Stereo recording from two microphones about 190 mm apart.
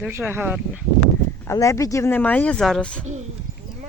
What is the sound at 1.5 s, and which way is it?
Speech, 15° left (ahead or behind).